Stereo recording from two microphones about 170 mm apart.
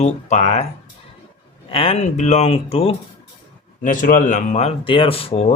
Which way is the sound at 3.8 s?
50° left (ahead or behind).